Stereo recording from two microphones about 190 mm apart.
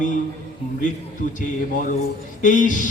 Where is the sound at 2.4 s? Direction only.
40° left (ahead or behind).